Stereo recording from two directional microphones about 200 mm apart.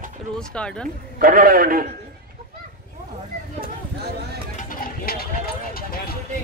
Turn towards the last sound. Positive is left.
turn(degrees=50)  # may be behind; listen again after turning